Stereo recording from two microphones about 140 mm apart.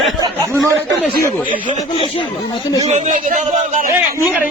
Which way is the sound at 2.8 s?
60° right (ahead or behind).